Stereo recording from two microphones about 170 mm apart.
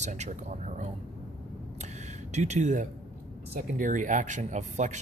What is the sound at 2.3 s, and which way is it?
Speech, 45° right (ahead or behind).